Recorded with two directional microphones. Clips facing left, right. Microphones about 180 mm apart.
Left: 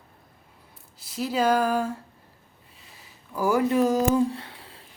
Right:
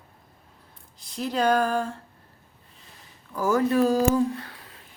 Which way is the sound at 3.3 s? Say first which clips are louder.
Even; 10° left (ahead or behind).